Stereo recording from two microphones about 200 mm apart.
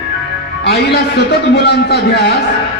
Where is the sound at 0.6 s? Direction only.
55° left (ahead or behind).